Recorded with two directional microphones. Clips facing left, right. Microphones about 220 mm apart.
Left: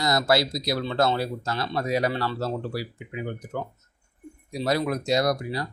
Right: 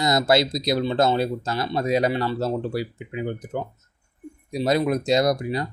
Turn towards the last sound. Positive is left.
turn(degrees=-20)  # may be behind; listen again after turning